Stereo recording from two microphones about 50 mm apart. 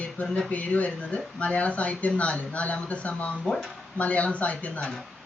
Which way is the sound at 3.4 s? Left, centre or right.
Centre.